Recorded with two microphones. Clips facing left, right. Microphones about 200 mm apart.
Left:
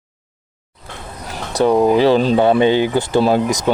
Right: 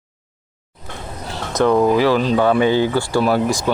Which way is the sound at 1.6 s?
20° left (ahead or behind).